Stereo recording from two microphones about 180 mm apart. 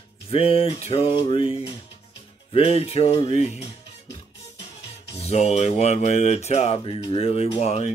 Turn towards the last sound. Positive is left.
turn(degrees=35)  # may be behind; listen again after turning